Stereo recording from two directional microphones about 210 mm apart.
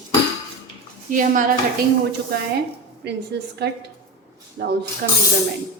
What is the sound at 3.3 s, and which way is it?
Ratchet, 50° right (ahead or behind).